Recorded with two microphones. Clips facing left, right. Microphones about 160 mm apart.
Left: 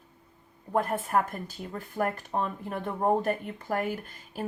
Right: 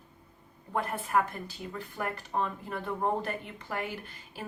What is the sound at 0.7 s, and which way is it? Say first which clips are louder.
Speech: left 3 dB; 45° left (ahead or behind).